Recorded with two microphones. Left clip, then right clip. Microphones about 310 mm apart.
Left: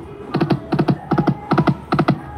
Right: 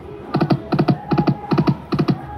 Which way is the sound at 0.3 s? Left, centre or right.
Centre.